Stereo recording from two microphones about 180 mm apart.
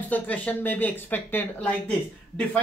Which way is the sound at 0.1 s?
10° left (ahead or behind).